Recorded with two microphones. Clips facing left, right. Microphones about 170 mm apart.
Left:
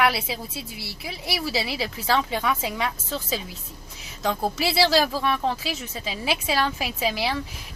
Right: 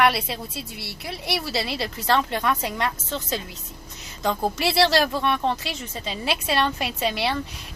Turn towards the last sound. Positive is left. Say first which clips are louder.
# right 1 dB
turn(degrees=5)  # may be behind; listen again after turning